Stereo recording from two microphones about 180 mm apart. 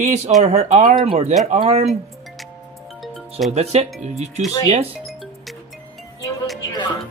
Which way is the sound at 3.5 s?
35° right (ahead or behind).